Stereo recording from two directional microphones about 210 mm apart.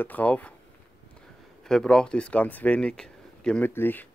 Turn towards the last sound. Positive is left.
turn(degrees=10)  # may be behind; listen again after turning